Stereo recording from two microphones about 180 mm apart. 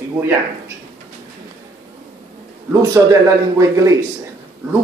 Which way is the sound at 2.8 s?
20° right (ahead or behind).